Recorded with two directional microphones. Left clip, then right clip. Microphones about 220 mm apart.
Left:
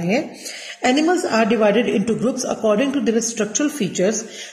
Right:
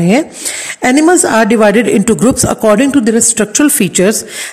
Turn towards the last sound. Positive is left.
turn(degrees=-50)  # may be behind; listen again after turning